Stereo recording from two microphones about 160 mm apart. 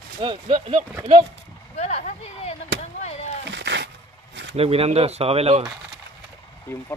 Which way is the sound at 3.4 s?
90° right.